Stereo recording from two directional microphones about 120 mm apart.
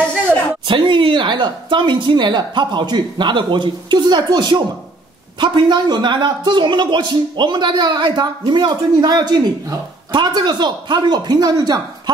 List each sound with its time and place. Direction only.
0.7 s speech: 40° right (ahead or behind)